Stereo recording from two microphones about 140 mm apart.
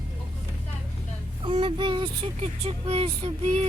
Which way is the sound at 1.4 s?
35° right (ahead or behind).